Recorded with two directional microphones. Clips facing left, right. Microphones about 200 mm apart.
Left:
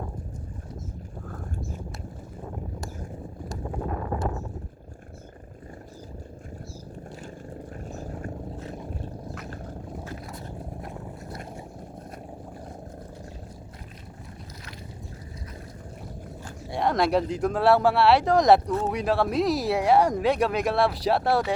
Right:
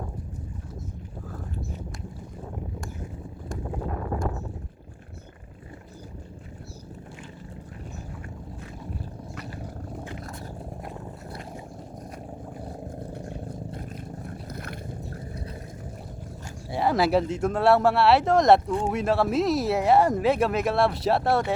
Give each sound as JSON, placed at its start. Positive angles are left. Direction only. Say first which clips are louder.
{"t": 14.3, "sound": "boat", "louder": "right 7 dB", "side_deg": -55}
{"t": 16.6, "sound": "speech", "louder": "right 1 dB", "side_deg": 0}